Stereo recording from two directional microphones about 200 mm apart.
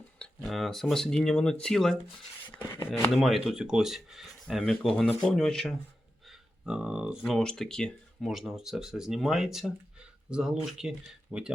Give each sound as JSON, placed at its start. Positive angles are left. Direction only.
{"t": 0.2, "sound": "speech", "side_deg": 0}
{"t": 2.6, "sound": "speech", "side_deg": 15}
{"t": 3.1, "sound": "speech", "side_deg": 0}
{"t": 6.2, "sound": "a sound", "side_deg": -5}
{"t": 7.3, "sound": "speech", "side_deg": 0}